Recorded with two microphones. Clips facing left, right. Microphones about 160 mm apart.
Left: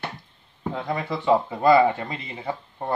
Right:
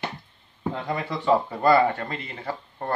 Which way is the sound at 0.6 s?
Centre (ahead or behind).